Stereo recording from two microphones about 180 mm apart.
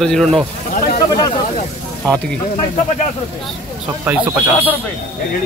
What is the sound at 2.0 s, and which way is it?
Speech, 5° left (ahead or behind).